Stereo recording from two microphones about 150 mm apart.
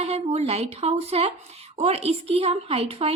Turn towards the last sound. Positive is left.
turn(degrees=-40)  # may be behind; listen again after turning